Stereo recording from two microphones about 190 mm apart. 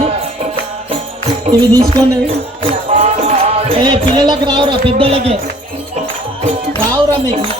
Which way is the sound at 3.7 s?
25° right (ahead or behind).